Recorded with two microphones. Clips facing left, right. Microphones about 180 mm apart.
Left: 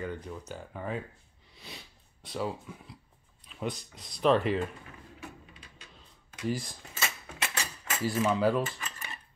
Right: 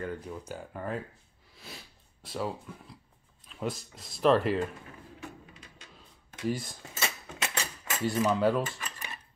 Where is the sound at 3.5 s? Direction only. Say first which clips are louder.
Right 1 dB; centre (ahead or behind).